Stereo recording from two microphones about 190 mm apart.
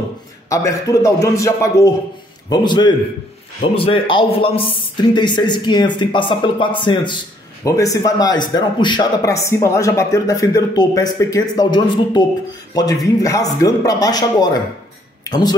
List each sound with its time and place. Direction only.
0.5 s a man's voice: 15° left (ahead or behind)